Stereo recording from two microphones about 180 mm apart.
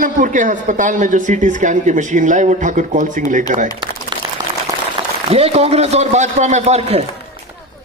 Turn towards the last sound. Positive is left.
turn(degrees=-35)  # may be behind; listen again after turning